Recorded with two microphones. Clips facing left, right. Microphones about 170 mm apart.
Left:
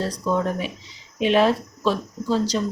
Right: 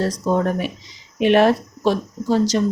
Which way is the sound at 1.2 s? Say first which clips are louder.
Right 4 dB; 60° right (ahead or behind).